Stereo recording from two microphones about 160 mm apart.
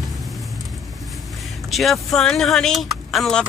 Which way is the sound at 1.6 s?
Centre (ahead or behind).